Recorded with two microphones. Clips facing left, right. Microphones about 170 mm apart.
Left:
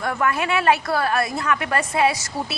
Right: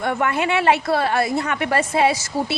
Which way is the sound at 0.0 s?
25° right (ahead or behind).